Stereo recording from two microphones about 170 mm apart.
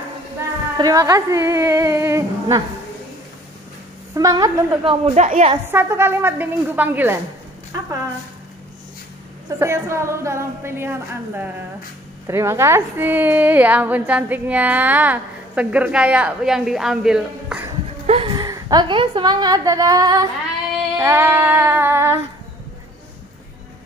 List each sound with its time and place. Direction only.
0.7 s a woman's voice: 20° right (ahead or behind)
4.1 s a woman's voice: 20° right (ahead or behind)
5.0 s a woman's voice: 45° right (ahead or behind)
5.7 s a woman's voice: 15° right (ahead or behind)
9.6 s a woman's voice: 15° right (ahead or behind)
18.0 s a woman's voice: 35° right (ahead or behind); by 22.2 s 15° right (ahead or behind)